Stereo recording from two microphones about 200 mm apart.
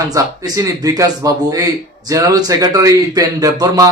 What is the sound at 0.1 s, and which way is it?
A man's voice, 15° right (ahead or behind).